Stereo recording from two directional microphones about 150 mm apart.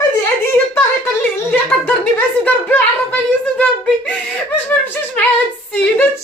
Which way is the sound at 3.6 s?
10° left (ahead or behind).